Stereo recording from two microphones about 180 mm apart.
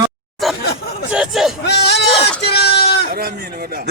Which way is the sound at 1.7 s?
70° left (ahead or behind).